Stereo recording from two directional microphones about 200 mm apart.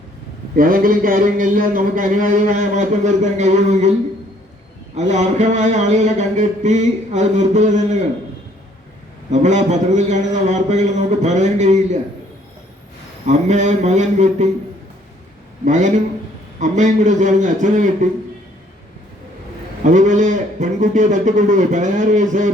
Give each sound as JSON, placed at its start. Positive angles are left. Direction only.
{"t": 0.5, "sound": "a man's voice", "side_deg": -45}
{"t": 4.9, "sound": "a man's voice", "side_deg": -35}
{"t": 9.3, "sound": "a man's voice", "side_deg": -35}
{"t": 13.2, "sound": "a man's voice", "side_deg": -35}
{"t": 15.6, "sound": "a man's voice", "side_deg": -40}
{"t": 19.8, "sound": "a man's voice", "side_deg": -40}